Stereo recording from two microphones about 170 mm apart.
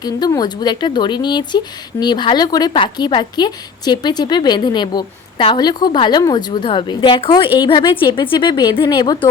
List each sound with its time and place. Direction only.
0.0 s speech: 25° left (ahead or behind)